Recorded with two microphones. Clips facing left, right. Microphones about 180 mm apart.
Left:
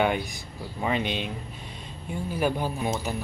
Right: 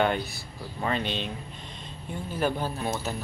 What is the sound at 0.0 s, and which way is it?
Speech, 10° left (ahead or behind).